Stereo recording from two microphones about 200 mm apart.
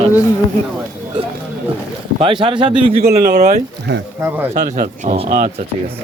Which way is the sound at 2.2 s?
25° right (ahead or behind).